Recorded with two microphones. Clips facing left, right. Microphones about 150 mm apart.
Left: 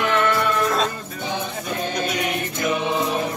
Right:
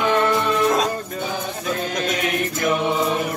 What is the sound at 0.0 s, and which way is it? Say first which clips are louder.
Music: right 2 dB; 15° right (ahead or behind).